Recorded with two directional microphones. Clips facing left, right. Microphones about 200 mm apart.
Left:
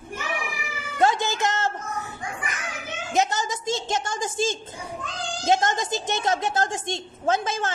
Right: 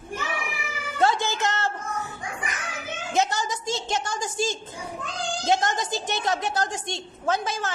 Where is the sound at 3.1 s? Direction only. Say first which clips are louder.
Left 1 dB; 20° left (ahead or behind).